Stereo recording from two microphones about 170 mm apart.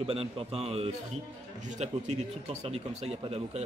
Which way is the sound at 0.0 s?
35° right (ahead or behind).